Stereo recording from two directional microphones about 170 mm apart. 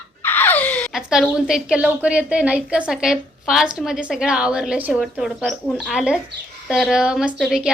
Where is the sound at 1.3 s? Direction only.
5° right (ahead or behind).